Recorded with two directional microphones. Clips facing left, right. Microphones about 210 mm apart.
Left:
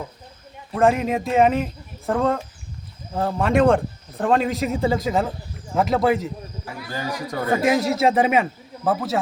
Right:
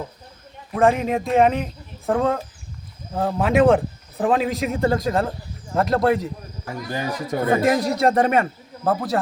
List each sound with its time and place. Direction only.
0.7 s speech: centre (ahead or behind)
6.9 s speech: 20° right (ahead or behind)
7.5 s speech: centre (ahead or behind)